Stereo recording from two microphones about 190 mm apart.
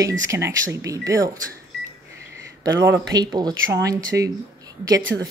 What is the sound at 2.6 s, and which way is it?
Speech, 20° right (ahead or behind).